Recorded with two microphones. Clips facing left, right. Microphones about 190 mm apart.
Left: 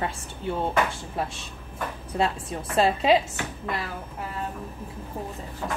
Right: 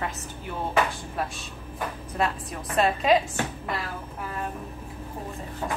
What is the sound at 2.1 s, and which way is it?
A woman's voice, 30° left (ahead or behind).